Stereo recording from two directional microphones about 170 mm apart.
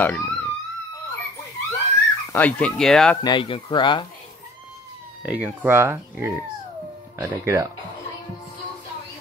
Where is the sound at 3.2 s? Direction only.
30° left (ahead or behind).